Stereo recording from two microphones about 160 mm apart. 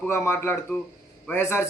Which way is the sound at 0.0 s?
10° left (ahead or behind).